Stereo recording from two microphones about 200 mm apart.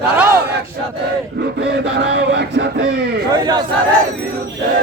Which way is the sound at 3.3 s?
20° right (ahead or behind).